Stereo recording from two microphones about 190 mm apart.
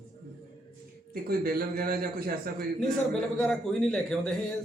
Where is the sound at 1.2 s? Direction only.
50° right (ahead or behind).